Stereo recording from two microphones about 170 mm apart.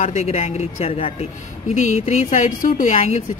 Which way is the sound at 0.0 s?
40° left (ahead or behind).